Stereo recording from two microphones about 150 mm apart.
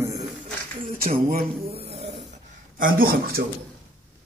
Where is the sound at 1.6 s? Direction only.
40° right (ahead or behind).